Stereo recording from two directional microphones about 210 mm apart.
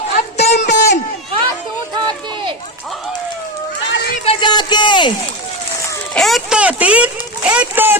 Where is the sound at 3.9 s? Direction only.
50° left (ahead or behind).